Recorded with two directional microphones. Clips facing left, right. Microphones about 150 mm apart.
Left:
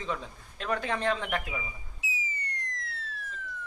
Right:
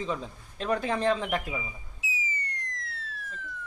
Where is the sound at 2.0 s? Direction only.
Centre (ahead or behind).